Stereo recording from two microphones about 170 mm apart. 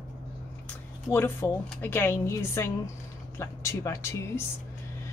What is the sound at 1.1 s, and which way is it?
A woman's voice, 15° left (ahead or behind).